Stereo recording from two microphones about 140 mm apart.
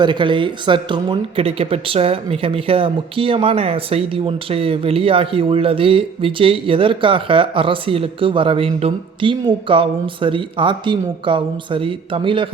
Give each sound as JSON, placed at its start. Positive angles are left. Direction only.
{"t": 0.0, "sound": "speech", "side_deg": -35}